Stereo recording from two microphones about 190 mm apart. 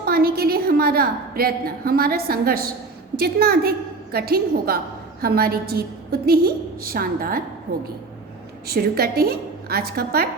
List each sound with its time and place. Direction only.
0.0 s a woman's voice: 55° right (ahead or behind)
8.6 s a woman's voice: 55° right (ahead or behind)